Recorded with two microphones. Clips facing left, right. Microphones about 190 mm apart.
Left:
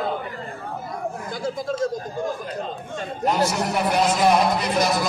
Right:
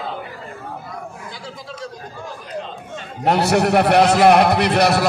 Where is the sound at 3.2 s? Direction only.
70° right (ahead or behind).